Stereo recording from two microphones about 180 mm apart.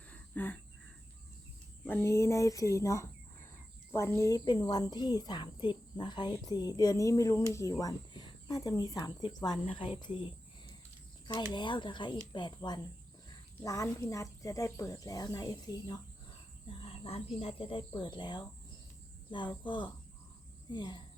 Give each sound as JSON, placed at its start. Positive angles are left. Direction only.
{"t": 0.1, "sound": "a sound", "side_deg": 10}
{"t": 1.9, "sound": "a woman's voice", "side_deg": 15}
{"t": 11.5, "sound": "a woman's voice", "side_deg": 25}
{"t": 16.6, "sound": "a woman's voice", "side_deg": 30}